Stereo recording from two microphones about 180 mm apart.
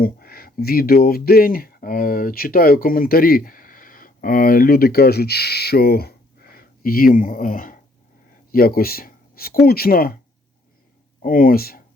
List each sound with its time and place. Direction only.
0.0 s speech: 55° left (ahead or behind)
11.2 s speech: 50° left (ahead or behind)